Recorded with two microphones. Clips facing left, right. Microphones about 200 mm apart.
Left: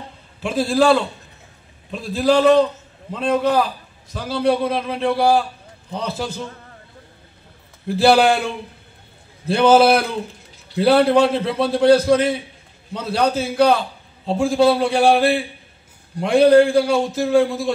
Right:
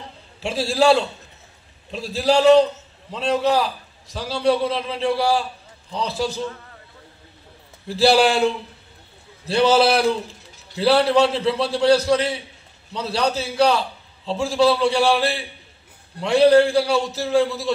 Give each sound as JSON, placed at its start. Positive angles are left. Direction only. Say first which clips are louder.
{"t": 0.4, "sound": "a man's voice", "louder": "left 2 dB", "side_deg": 55}
{"t": 7.9, "sound": "a man's voice", "louder": "left 2 dB", "side_deg": 50}